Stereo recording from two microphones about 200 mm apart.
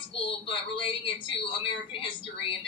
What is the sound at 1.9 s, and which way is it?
Speech, 25° left (ahead or behind).